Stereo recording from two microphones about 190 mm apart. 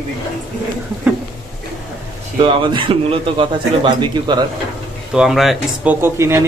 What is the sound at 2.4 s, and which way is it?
A man's voice, 25° right (ahead or behind).